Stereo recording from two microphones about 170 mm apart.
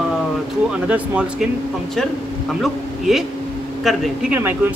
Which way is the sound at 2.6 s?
Centre (ahead or behind).